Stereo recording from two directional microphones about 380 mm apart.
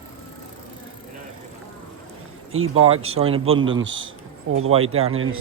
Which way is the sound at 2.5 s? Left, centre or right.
Right.